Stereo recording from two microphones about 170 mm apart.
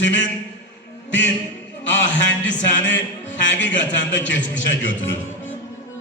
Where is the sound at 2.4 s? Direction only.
90° left.